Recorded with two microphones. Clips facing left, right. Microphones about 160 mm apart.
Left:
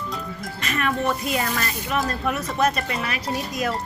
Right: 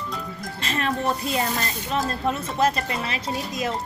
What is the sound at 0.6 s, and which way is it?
Speech, 30° right (ahead or behind).